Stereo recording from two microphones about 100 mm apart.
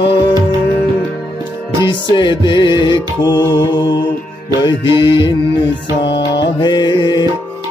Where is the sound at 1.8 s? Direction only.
50° left (ahead or behind).